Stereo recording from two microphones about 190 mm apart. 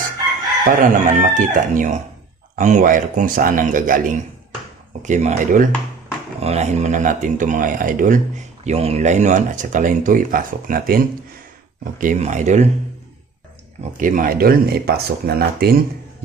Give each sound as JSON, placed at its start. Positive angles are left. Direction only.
{"t": 0.7, "sound": "speech", "side_deg": -45}
{"t": 12.0, "sound": "speech", "side_deg": -40}
{"t": 13.9, "sound": "speech", "side_deg": -45}